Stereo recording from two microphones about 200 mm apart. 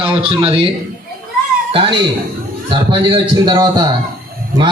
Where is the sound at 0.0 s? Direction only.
25° right (ahead or behind).